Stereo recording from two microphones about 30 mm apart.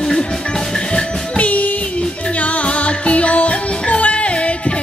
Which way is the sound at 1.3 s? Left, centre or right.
Left.